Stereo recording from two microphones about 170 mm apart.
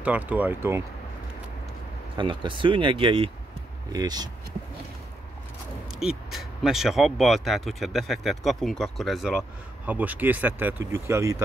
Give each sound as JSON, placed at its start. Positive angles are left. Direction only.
{"t": 0.0, "sound": "speech", "side_deg": -10}
{"t": 2.1, "sound": "speech", "side_deg": -30}
{"t": 5.9, "sound": "speech", "side_deg": -5}